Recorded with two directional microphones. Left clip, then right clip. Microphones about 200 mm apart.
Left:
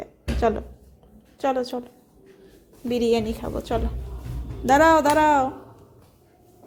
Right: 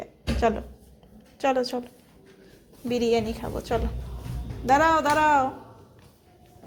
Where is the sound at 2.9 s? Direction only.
20° left (ahead or behind).